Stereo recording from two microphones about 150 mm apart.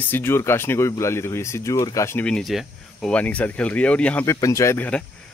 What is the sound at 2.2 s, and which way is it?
Speech, centre (ahead or behind).